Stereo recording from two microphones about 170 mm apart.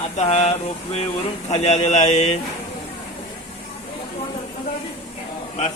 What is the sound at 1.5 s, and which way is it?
Speech, 40° left (ahead or behind).